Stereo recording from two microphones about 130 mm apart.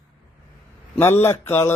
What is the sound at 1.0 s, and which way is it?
Speech, 20° left (ahead or behind).